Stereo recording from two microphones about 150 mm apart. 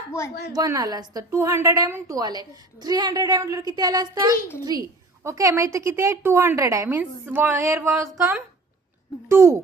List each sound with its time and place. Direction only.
0.5 s a woman's voice: 25° right (ahead or behind)
9.3 s a woman's voice: 20° right (ahead or behind)